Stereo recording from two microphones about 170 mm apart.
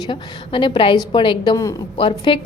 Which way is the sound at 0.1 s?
30° left (ahead or behind).